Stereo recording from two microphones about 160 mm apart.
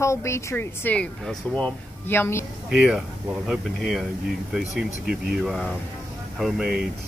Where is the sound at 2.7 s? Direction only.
Centre (ahead or behind).